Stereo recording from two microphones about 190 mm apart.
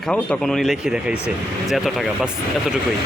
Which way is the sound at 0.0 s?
5° left (ahead or behind).